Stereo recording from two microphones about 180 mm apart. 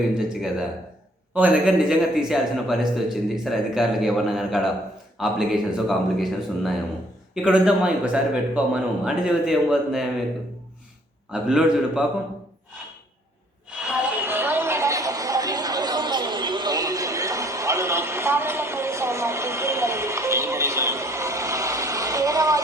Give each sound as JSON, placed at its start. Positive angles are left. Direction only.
{"t": 0.1, "sound": "a man's voice", "side_deg": -5}
{"t": 11.3, "sound": "a man's voice", "side_deg": -5}
{"t": 13.7, "sound": "a sound", "side_deg": -5}
{"t": 14.3, "sound": "chatter", "side_deg": -10}